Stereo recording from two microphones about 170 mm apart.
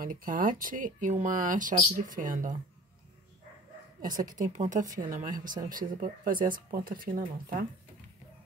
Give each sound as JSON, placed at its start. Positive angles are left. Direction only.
{"t": 0.0, "sound": "speech", "side_deg": -55}
{"t": 4.2, "sound": "a woman's voice", "side_deg": -20}
{"t": 4.5, "sound": "speech", "side_deg": -45}